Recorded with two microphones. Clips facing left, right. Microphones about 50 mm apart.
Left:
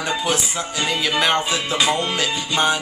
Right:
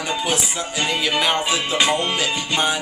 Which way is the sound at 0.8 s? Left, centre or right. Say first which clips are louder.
Even; centre.